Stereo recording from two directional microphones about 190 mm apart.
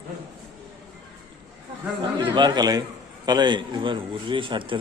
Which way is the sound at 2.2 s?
25° right (ahead or behind).